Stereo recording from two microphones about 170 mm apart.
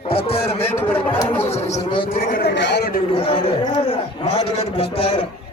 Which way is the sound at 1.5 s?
40° left (ahead or behind).